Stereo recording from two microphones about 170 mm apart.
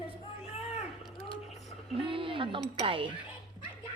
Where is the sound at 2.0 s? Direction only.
30° right (ahead or behind).